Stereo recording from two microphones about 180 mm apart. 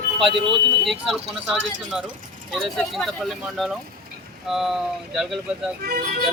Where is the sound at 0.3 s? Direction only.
25° right (ahead or behind).